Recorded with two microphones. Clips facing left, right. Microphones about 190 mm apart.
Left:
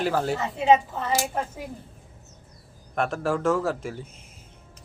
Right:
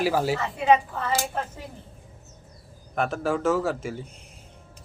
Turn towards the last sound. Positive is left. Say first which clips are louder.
# right 2 dB
turn(degrees=0)  # may be behind; listen again after turning